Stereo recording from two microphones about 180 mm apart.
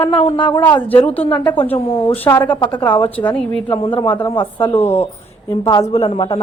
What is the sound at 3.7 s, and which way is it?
A woman's voice, 30° left (ahead or behind).